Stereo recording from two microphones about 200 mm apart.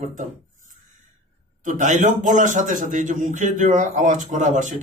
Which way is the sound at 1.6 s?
40° right (ahead or behind).